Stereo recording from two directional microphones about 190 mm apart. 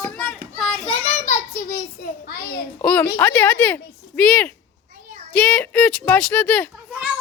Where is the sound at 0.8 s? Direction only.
30° left (ahead or behind).